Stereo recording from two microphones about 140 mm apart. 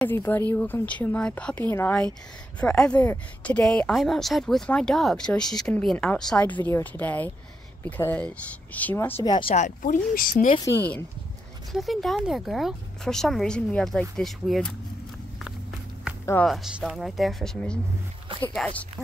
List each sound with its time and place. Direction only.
0.0 s speech: 15° left (ahead or behind)
9.2 s speech: 35° left (ahead or behind)
9.6 s speech: 70° left (ahead or behind)
10.1 s speech: 90° left
10.8 s speech: 15° left (ahead or behind)
11.7 s speech: centre (ahead or behind)
16.4 s speech: centre (ahead or behind)